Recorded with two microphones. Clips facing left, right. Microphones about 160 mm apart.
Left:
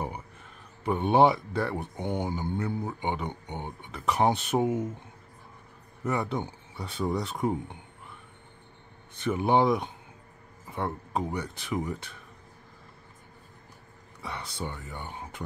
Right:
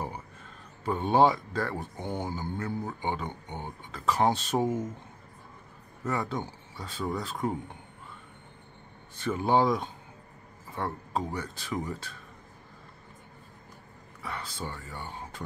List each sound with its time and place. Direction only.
0.8 s speech: 20° left (ahead or behind)
6.0 s speech: 15° left (ahead or behind)
9.2 s speech: 15° left (ahead or behind)
14.2 s speech: 20° left (ahead or behind)